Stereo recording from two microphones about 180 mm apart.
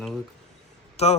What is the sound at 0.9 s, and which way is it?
Speech, 35° left (ahead or behind).